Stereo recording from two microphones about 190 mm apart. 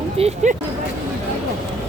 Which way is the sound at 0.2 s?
35° right (ahead or behind).